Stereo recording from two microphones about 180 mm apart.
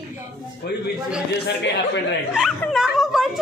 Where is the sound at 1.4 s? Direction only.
70° left (ahead or behind).